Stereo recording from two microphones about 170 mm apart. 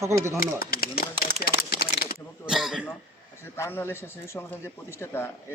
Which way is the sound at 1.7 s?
65° left (ahead or behind).